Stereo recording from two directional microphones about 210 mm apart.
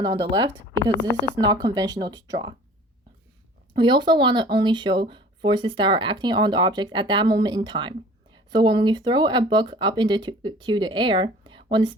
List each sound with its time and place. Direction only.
0.0 s speech: 20° right (ahead or behind)
3.8 s speech: 20° right (ahead or behind)